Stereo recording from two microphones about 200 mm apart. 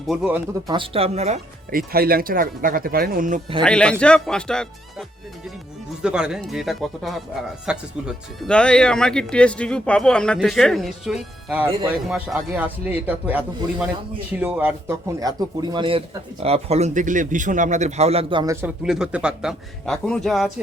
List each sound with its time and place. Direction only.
0.1 s speech: centre (ahead or behind)
0.7 s speech: 25° right (ahead or behind)
1.7 s speech: 50° right (ahead or behind)
3.6 s speech: 5° left (ahead or behind); by 18.5 s 25° right (ahead or behind)
18.5 s speech: 5° right (ahead or behind)